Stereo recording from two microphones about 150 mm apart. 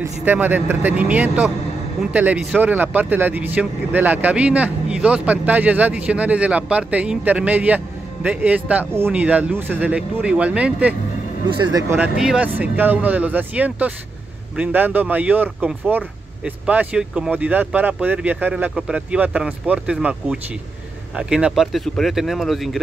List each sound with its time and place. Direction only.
0.0 s speech: 10° right (ahead or behind)
11.5 s speech: 30° right (ahead or behind)
11.9 s speech: 5° right (ahead or behind)